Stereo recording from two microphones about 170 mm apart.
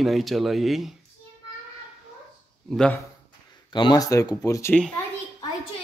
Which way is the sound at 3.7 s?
25° left (ahead or behind).